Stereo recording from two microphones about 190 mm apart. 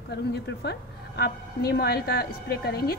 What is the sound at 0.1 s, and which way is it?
Speech, 65° left (ahead or behind).